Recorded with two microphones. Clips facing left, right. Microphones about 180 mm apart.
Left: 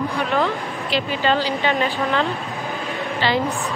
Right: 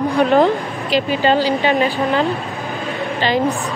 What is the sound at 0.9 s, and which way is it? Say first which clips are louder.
Speech: right 5 dB; 15° right (ahead or behind).